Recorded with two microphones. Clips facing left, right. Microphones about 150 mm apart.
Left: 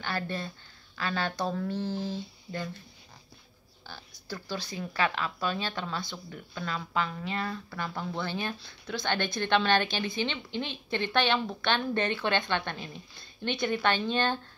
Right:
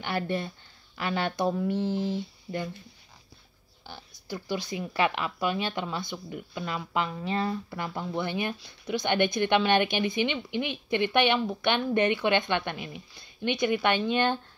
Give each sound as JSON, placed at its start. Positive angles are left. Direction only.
{"t": 0.0, "sound": "speech", "side_deg": -20}
{"t": 3.8, "sound": "speech", "side_deg": -20}